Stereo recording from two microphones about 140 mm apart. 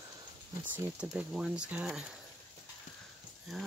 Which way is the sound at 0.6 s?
15° right (ahead or behind).